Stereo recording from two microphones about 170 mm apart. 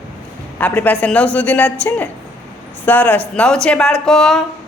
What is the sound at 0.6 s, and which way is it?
A woman's voice, 10° left (ahead or behind).